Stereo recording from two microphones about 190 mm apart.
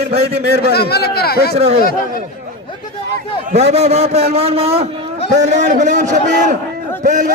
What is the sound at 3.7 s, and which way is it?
A man's voice, 35° right (ahead or behind).